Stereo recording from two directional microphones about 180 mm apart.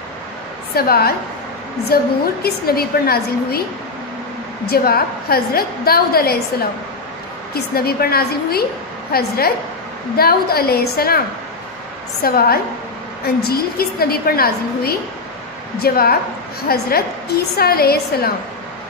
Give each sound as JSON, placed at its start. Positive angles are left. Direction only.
{"t": 0.7, "sound": "a woman's voice", "side_deg": 60}
{"t": 4.6, "sound": "a woman's voice", "side_deg": 55}
{"t": 7.5, "sound": "a woman's voice", "side_deg": 60}